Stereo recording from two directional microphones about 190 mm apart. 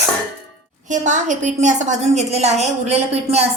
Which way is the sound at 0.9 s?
40° right (ahead or behind).